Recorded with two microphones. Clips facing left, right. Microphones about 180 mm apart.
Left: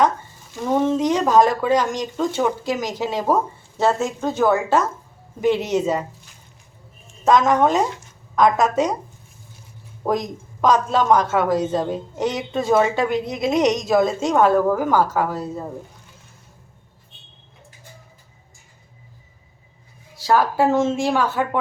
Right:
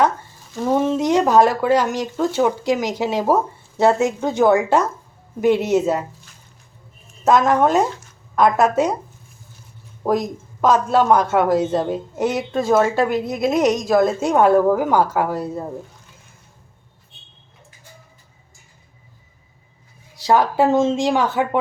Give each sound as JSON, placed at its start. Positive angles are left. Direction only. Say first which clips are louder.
{"t": 0.7, "sound": "speech", "louder": "right 1 dB", "side_deg": -10}
{"t": 7.3, "sound": "speech", "louder": "right 1 dB", "side_deg": -5}
{"t": 10.0, "sound": "speech", "louder": "right 2 dB", "side_deg": -5}
{"t": 20.2, "sound": "speech", "louder": "right 2 dB", "side_deg": -20}